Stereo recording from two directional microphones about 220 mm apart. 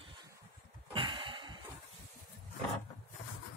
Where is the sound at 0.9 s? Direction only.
25° right (ahead or behind).